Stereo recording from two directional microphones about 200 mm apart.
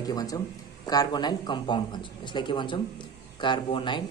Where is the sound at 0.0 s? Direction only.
20° left (ahead or behind).